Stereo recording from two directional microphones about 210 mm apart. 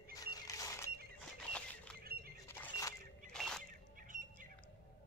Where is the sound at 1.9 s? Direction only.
45° right (ahead or behind).